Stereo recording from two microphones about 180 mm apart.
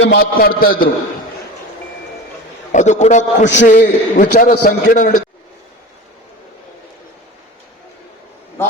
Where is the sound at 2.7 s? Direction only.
40° left (ahead or behind).